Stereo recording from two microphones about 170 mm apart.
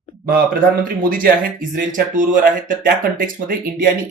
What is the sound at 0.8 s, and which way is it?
Speech, 55° right (ahead or behind).